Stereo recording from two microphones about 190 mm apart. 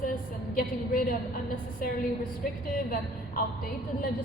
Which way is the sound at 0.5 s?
45° left (ahead or behind).